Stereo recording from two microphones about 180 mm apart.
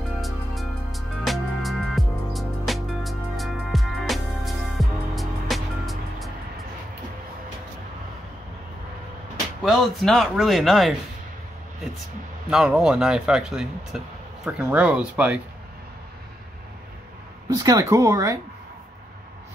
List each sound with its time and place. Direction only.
0.2 s music: centre (ahead or behind)
9.6 s speech: centre (ahead or behind)
12.4 s speech: 5° right (ahead or behind)
17.6 s speech: 20° right (ahead or behind)